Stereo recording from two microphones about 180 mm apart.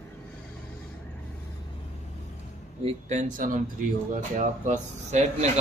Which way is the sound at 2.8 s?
35° right (ahead or behind).